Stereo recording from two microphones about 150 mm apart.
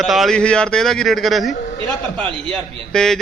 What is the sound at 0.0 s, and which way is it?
A man's voice, centre (ahead or behind).